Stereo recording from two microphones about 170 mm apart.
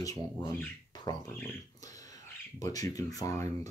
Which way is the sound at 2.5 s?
20° left (ahead or behind).